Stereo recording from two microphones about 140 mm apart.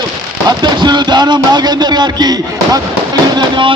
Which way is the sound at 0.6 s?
30° right (ahead or behind).